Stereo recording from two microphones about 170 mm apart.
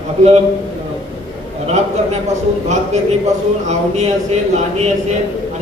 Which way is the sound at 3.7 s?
40° right (ahead or behind).